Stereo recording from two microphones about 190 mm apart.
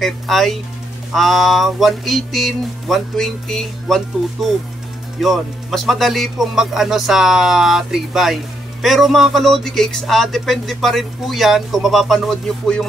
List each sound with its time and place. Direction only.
0.0 s speech: centre (ahead or behind)